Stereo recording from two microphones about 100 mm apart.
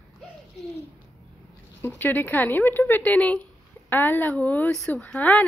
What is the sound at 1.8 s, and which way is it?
A woman's voice, 20° left (ahead or behind).